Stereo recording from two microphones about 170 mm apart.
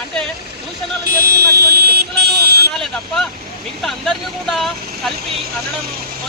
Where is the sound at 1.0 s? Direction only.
70° right (ahead or behind).